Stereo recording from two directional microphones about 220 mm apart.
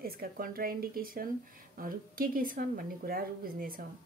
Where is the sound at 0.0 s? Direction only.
45° right (ahead or behind).